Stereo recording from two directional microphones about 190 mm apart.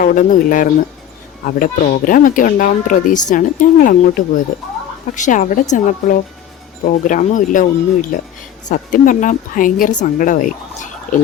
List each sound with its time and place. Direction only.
0.0 s a woman's voice: 45° left (ahead or behind)